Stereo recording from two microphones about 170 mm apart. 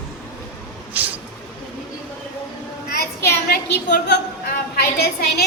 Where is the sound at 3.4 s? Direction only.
70° left (ahead or behind).